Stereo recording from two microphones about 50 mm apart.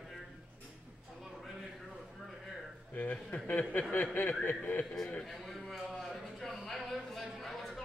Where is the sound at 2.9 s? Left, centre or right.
Left.